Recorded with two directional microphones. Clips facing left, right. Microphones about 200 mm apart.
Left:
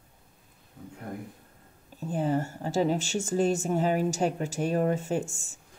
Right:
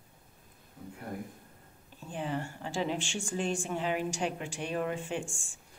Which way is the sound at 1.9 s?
40° left (ahead or behind).